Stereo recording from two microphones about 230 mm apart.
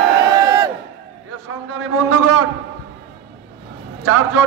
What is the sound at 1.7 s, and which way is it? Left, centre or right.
Speech, right.